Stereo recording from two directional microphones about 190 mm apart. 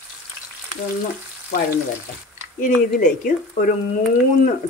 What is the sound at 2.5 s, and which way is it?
Speech, 45° left (ahead or behind).